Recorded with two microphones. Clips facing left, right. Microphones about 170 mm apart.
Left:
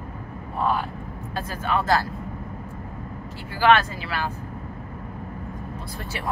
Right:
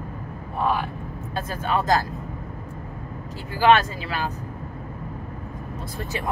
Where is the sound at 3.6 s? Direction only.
20° right (ahead or behind).